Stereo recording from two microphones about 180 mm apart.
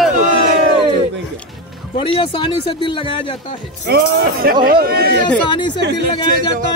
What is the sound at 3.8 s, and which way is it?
Speech, 60° right (ahead or behind).